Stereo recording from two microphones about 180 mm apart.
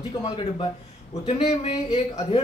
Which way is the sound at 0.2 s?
30° left (ahead or behind).